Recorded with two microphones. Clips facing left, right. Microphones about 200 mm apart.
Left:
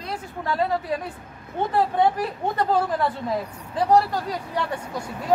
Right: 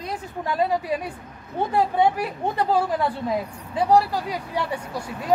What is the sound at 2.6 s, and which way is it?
Speech, 10° right (ahead or behind).